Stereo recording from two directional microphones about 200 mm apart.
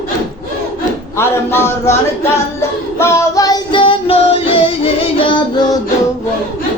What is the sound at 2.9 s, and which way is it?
Music, 15° left (ahead or behind).